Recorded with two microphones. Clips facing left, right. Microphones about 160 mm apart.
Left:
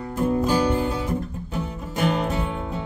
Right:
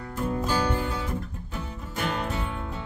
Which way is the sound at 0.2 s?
15° left (ahead or behind).